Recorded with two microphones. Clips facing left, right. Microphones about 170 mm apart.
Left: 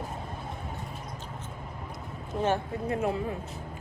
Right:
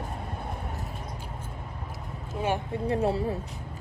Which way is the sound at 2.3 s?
10° right (ahead or behind).